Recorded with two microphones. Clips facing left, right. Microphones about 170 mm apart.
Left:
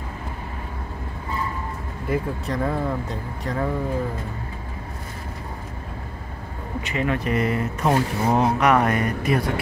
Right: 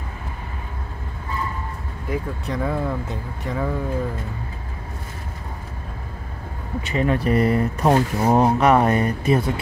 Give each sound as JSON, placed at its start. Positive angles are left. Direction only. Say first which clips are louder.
{"t": 2.0, "sound": "speech", "louder": "left 2 dB", "side_deg": 0}
{"t": 6.9, "sound": "speech", "louder": "right 4 dB", "side_deg": -35}